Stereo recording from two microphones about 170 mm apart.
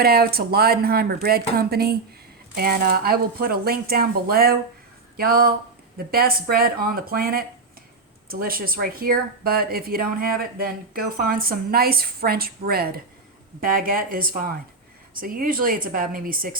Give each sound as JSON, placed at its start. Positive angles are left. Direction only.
{"t": 0.0, "sound": "speech", "side_deg": -65}